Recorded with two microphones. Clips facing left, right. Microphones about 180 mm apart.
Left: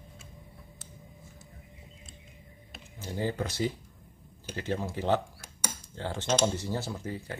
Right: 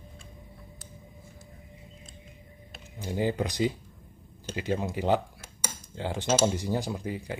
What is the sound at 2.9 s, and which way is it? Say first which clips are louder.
Speech: right 4 dB; 15° right (ahead or behind).